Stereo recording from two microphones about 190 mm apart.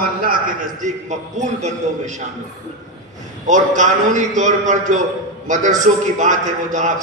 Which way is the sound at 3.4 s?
40° right (ahead or behind).